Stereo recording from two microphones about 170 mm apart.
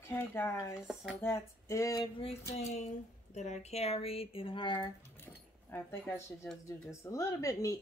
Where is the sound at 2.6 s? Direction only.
40° left (ahead or behind).